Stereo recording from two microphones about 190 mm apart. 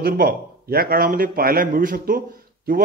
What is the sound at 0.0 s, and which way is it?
A man's voice, 50° right (ahead or behind).